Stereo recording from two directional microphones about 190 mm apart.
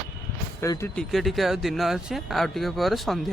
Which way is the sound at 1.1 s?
Centre (ahead or behind).